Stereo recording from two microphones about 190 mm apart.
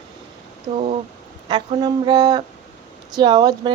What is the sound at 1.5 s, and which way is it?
Speech, 25° right (ahead or behind).